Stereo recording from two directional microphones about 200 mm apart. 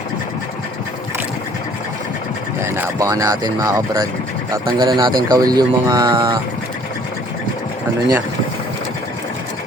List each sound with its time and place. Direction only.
2.6 s speech: 15° right (ahead or behind)